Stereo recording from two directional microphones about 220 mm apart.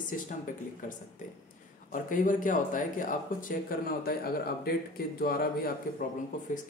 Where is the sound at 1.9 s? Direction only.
35° left (ahead or behind).